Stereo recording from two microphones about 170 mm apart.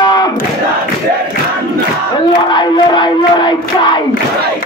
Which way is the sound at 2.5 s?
25° left (ahead or behind).